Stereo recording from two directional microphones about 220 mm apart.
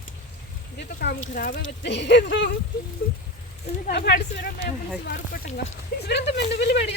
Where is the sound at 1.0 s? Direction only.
40° left (ahead or behind).